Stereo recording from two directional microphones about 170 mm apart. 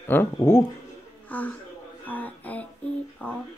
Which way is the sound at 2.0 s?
10° left (ahead or behind).